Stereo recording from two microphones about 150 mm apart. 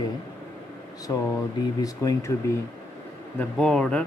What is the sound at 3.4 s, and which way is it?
Speech, 5° left (ahead or behind).